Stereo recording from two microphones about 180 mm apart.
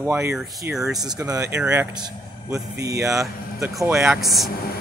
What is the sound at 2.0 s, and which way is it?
Speech, 20° right (ahead or behind).